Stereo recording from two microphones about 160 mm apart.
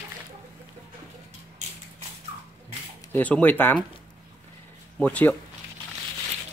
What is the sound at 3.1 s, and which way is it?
Speech, 10° left (ahead or behind).